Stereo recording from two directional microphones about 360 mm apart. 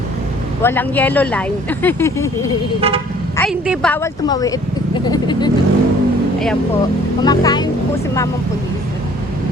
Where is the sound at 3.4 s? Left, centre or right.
Centre.